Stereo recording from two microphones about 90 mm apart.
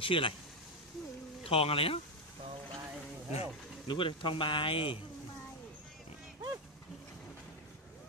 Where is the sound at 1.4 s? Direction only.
90° left.